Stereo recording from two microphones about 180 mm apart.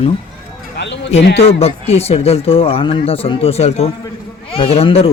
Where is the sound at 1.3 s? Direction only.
35° left (ahead or behind).